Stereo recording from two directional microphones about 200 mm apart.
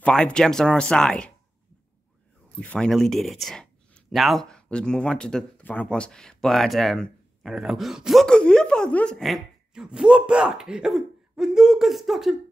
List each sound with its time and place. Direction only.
0.0 s speech: 5° left (ahead or behind)
2.6 s speech: 5° left (ahead or behind)